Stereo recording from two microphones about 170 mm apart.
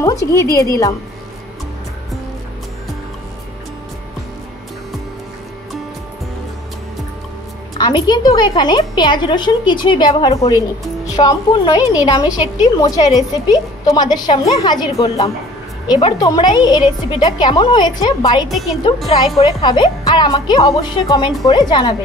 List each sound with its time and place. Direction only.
0.0 s a woman's voice: 20° left (ahead or behind)
7.7 s a woman's voice: 25° left (ahead or behind)